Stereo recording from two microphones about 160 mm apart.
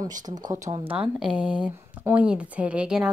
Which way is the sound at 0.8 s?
10° right (ahead or behind).